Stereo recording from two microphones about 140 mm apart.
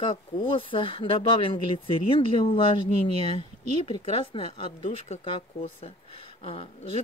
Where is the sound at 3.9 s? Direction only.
40° left (ahead or behind).